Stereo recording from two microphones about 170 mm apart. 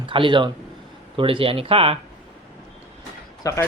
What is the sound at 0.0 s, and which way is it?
Speech, 30° right (ahead or behind).